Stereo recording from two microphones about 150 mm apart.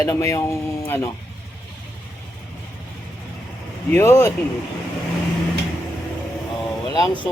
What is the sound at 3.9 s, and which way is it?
Speech, 15° left (ahead or behind).